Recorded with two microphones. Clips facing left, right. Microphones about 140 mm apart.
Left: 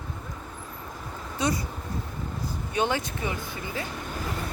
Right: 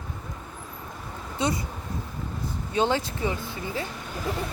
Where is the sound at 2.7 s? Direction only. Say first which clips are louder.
Right 3 dB; 25° right (ahead or behind).